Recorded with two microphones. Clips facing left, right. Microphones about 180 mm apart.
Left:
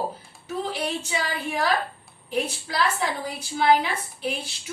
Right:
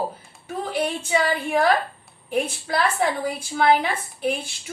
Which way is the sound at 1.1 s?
50° right (ahead or behind).